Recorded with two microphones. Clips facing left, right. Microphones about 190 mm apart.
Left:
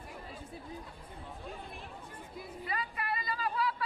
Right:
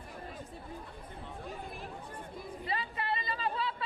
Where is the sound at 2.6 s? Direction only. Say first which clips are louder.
Right 1 dB; 25° right (ahead or behind).